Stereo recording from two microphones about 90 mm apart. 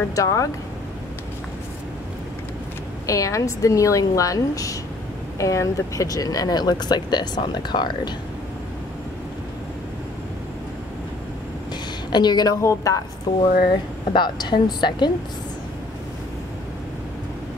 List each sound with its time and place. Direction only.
0.1 s a woman's voice: 40° left (ahead or behind)
3.1 s a woman's voice: 35° left (ahead or behind); by 8.1 s 55° left (ahead or behind)
12.1 s speech: 50° left (ahead or behind)
12.6 s a woman's voice: 40° left (ahead or behind)
13.3 s a woman's voice: 50° left (ahead or behind)